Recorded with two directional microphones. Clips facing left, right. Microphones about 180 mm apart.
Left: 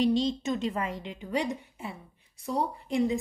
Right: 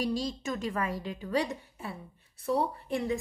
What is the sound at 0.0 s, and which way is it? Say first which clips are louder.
A woman's voice: left 6 dB; 25° left (ahead or behind).